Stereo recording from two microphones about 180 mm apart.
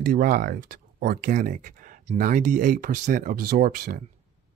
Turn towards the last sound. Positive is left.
turn(degrees=-55)  # may be behind; listen again after turning